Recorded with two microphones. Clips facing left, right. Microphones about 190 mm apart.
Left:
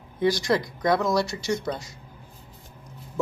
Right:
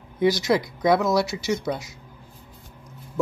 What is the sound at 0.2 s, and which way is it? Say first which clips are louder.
Speech: right 2 dB; 5° right (ahead or behind).